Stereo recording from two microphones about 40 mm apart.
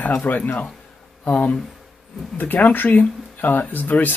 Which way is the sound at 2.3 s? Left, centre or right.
Left.